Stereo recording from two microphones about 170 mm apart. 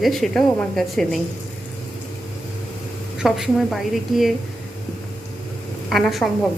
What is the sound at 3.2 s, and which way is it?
Speech, centre (ahead or behind).